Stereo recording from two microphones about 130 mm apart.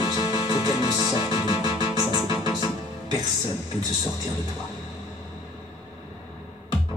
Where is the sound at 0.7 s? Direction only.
30° right (ahead or behind).